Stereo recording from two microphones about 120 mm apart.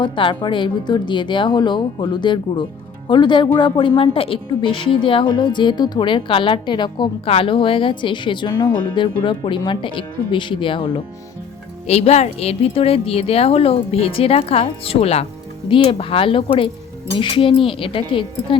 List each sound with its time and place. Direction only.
0.0 s a woman's voice: 45° left (ahead or behind)
7.3 s speech: 50° left (ahead or behind)
11.9 s speech: 60° left (ahead or behind)